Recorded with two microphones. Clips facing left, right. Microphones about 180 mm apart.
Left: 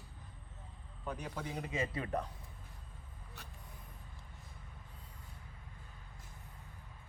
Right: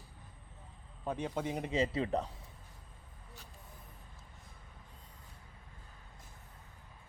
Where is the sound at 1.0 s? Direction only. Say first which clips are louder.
Right 6 dB; 25° right (ahead or behind).